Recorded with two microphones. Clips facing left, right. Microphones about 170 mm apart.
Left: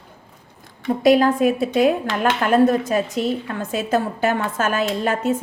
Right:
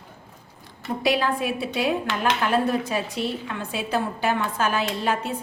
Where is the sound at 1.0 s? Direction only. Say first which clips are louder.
Left 9 dB; 45° left (ahead or behind).